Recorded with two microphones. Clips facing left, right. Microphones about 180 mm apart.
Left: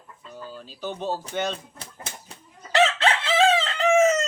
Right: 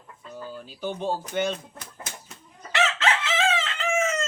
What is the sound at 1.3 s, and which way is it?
Speech, 10° right (ahead or behind).